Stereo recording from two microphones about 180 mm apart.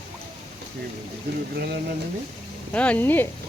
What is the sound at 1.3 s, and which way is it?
Speech, 65° right (ahead or behind).